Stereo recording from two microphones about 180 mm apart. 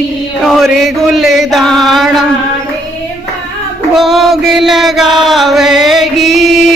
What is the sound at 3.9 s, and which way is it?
Chant, centre (ahead or behind).